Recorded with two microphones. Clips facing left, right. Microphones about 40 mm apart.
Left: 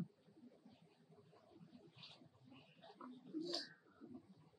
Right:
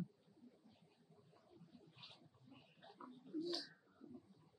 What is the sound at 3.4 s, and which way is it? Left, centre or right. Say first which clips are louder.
Bird: right 2 dB; centre.